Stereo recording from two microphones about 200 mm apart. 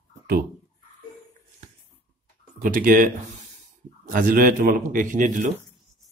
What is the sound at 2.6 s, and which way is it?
Speech, 45° right (ahead or behind).